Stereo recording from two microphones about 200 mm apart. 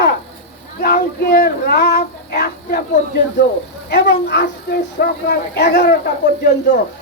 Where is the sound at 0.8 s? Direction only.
50° left (ahead or behind).